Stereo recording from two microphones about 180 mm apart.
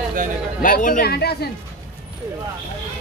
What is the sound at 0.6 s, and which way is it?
Speech, 50° left (ahead or behind).